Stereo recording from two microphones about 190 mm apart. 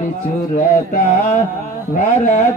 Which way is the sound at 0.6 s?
40° left (ahead or behind).